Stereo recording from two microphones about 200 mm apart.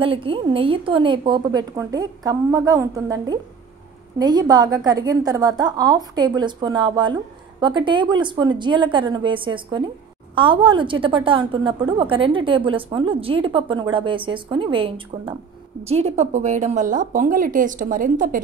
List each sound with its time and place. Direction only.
0.0 s a woman's voice: 25° right (ahead or behind); by 18.4 s 40° right (ahead or behind)